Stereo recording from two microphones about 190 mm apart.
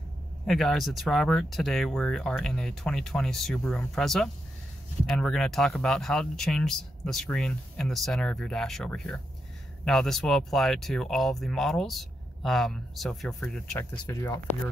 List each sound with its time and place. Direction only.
0.5 s speech: centre (ahead or behind)